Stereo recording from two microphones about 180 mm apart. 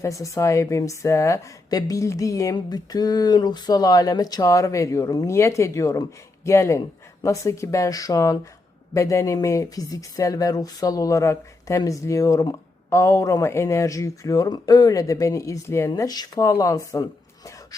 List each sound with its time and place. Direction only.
0.0 s a woman's voice: 15° left (ahead or behind)